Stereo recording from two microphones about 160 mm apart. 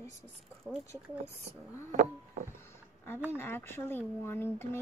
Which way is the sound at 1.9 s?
50° right (ahead or behind).